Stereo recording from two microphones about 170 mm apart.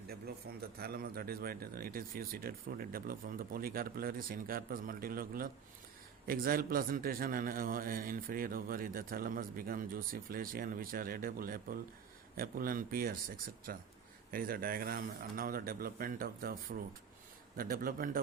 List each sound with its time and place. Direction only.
0.8 s a man's voice: 65° right (ahead or behind)
17.6 s a man's voice: 60° right (ahead or behind)